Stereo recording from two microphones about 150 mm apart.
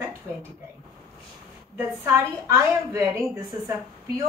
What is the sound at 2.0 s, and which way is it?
A woman's voice, 20° right (ahead or behind).